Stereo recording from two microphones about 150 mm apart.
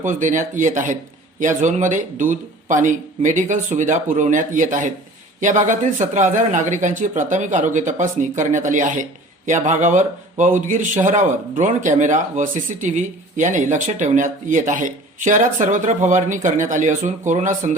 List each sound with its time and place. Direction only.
0.0 s speech: 55° right (ahead or behind)